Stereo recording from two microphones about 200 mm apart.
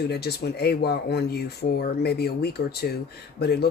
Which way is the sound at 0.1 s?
55° left (ahead or behind).